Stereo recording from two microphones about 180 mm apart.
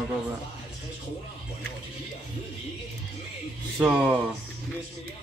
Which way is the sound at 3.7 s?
5° right (ahead or behind).